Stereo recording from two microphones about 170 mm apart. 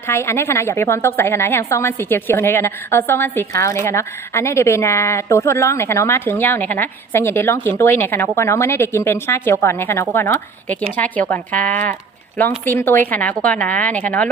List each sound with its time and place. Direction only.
0.1 s a woman's voice: 15° left (ahead or behind)